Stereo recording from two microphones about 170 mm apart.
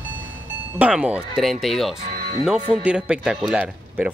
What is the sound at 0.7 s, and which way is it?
Speech, 5° right (ahead or behind).